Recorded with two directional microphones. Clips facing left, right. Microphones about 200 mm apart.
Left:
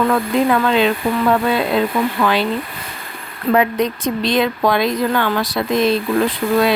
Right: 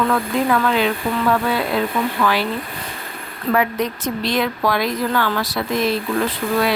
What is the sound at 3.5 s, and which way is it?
Speech, 20° left (ahead or behind).